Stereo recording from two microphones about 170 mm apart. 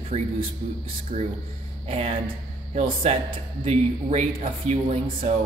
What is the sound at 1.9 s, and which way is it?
Speech, 35° right (ahead or behind).